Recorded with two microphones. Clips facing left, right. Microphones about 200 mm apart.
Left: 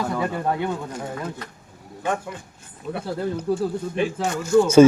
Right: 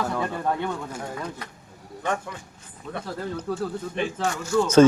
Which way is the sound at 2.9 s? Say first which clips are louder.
Left 5 dB; 10° left (ahead or behind).